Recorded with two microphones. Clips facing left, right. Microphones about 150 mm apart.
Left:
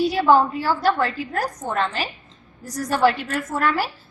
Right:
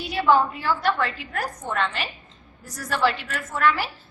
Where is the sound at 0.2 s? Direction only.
35° left (ahead or behind).